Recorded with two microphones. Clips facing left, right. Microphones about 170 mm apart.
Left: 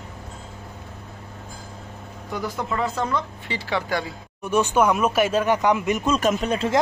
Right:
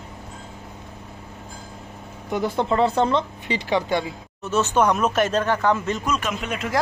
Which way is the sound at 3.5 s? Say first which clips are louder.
Right 3 dB; 20° right (ahead or behind).